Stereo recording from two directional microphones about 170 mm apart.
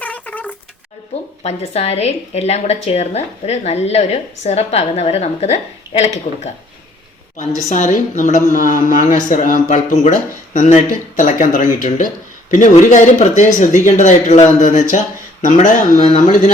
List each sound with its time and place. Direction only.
0.0 s a sound: 10° left (ahead or behind)
1.4 s a woman's voice: 40° left (ahead or behind)
7.3 s speech: 45° left (ahead or behind)